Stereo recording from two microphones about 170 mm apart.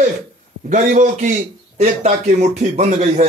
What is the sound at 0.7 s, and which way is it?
A man's voice, 50° right (ahead or behind).